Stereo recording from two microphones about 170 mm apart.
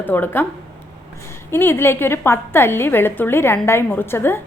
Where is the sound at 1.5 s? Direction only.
15° left (ahead or behind).